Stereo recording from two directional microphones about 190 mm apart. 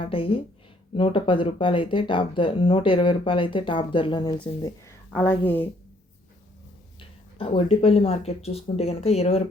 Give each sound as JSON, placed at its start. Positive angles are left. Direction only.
{"t": 0.0, "sound": "speech", "side_deg": 30}
{"t": 5.1, "sound": "speech", "side_deg": 10}
{"t": 7.3, "sound": "speech", "side_deg": 30}